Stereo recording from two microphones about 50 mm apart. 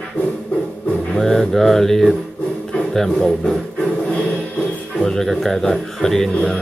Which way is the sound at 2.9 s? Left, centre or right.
Centre.